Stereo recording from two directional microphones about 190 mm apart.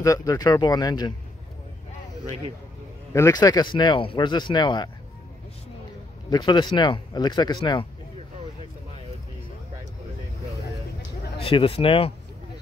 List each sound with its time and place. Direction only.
0.0 s speech: 15° left (ahead or behind)
3.1 s speech: 15° left (ahead or behind)
6.3 s speech: 20° left (ahead or behind)
11.3 s speech: 30° left (ahead or behind)